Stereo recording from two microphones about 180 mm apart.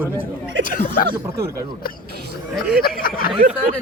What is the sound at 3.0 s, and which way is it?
Speech, 55° left (ahead or behind).